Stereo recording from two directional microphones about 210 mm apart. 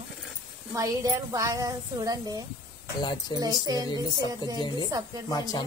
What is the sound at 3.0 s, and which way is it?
Speech, 20° left (ahead or behind).